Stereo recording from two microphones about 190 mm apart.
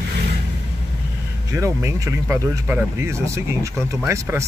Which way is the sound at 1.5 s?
15° right (ahead or behind).